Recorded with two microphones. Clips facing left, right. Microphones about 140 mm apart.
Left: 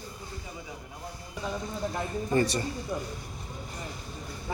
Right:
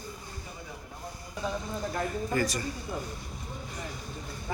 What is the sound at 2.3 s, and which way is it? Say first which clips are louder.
Speech: left 5 dB; 30° left (ahead or behind).